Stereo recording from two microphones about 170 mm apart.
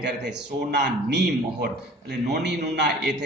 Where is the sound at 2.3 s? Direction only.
90° right.